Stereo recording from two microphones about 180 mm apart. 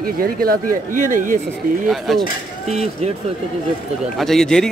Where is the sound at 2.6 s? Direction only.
35° right (ahead or behind).